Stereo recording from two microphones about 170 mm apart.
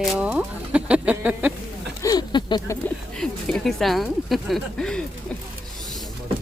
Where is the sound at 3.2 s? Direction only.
5° left (ahead or behind).